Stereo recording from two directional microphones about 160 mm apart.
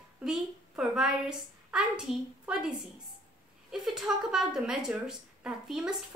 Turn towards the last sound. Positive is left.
turn(degrees=0)  # may be behind; listen again after turning